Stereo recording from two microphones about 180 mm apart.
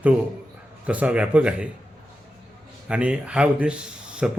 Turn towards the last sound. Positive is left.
turn(degrees=-5)  # may be behind; listen again after turning